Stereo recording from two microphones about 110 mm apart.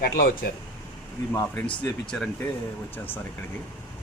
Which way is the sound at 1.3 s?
20° left (ahead or behind).